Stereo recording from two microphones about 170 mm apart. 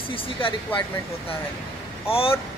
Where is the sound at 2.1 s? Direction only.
35° left (ahead or behind).